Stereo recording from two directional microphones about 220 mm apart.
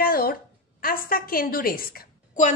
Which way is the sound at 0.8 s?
40° left (ahead or behind).